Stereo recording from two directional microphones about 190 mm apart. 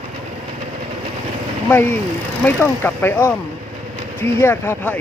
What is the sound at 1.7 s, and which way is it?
Speech, 10° left (ahead or behind).